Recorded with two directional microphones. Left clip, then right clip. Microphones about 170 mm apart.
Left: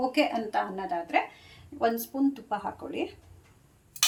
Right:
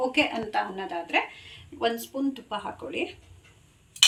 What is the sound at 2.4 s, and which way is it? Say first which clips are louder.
Speech: left 1 dB; 50° left (ahead or behind).